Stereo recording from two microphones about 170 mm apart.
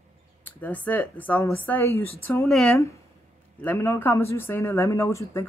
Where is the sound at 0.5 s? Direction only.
10° left (ahead or behind).